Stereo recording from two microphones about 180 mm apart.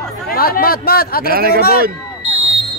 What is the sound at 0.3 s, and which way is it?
Speech, 55° left (ahead or behind).